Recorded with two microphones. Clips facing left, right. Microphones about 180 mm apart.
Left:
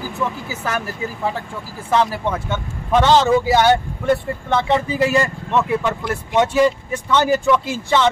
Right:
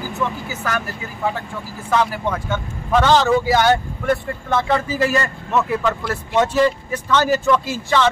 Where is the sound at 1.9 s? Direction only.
30° left (ahead or behind).